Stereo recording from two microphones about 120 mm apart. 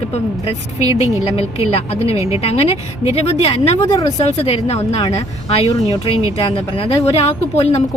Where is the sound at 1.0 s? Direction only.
60° left (ahead or behind).